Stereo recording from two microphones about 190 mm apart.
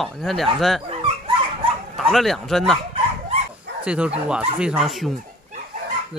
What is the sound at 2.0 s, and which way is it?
Speech, centre (ahead or behind).